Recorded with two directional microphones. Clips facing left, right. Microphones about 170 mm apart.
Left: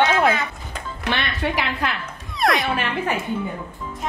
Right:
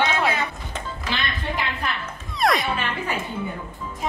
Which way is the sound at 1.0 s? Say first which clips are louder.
Left 6 dB; 80° left.